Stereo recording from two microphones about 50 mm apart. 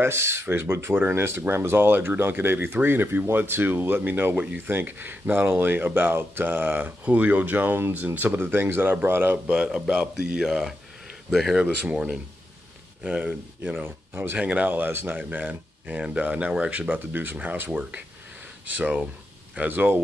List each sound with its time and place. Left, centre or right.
0.0 s speech: right
7.1 s speech: right
9.5 s speech: centre
11.6 s speech: right
13.8 s speech: right
14.3 s speech: right
14.7 s speech: right
15.3 s speech: right
16.9 s speech: right
18.7 s speech: right
19.7 s speech: right